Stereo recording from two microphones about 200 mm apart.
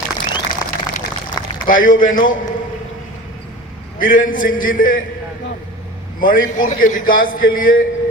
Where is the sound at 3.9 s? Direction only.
45° left (ahead or behind).